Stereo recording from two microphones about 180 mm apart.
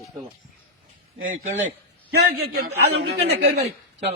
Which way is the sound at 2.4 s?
60° right (ahead or behind).